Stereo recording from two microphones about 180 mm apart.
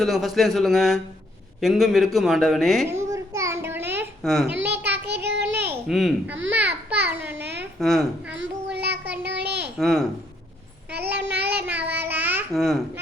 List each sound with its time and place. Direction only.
0.0 s speech: centre (ahead or behind)
2.9 s a sound: 15° right (ahead or behind)
4.2 s speech: centre (ahead or behind)
4.5 s a sound: 10° right (ahead or behind)
5.0 s a sound: 70° right (ahead or behind)
5.6 s a child's voice: centre (ahead or behind)
6.7 s babbling: 70° right (ahead or behind)
7.4 s a sound: 70° right (ahead or behind)
7.8 s speech: centre (ahead or behind)
8.4 s child singing: 70° right (ahead or behind)
9.7 s speech: centre (ahead or behind)
10.9 s child singing: 65° right (ahead or behind)
11.6 s child singing: 10° right (ahead or behind)
12.5 s speech: centre (ahead or behind)